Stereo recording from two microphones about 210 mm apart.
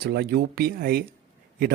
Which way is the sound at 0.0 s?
50° right (ahead or behind).